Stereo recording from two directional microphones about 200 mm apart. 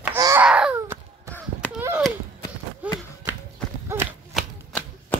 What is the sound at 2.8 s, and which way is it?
Run, 5° right (ahead or behind).